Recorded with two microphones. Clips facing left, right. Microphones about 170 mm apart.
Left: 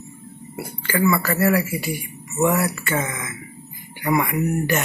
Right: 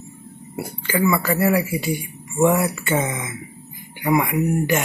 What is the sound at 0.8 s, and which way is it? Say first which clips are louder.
Speech: even; 15° right (ahead or behind).